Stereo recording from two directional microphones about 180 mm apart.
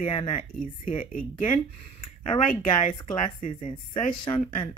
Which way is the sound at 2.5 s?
45° left (ahead or behind).